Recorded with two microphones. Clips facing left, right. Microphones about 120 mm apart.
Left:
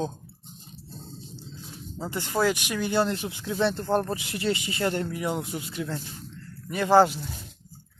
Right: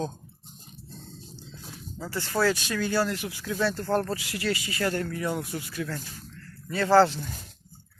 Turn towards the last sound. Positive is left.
turn(degrees=15)  # may be behind; listen again after turning